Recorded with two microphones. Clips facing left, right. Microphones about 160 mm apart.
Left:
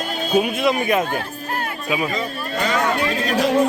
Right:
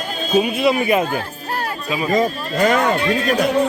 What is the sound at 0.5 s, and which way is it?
Speech, centre (ahead or behind).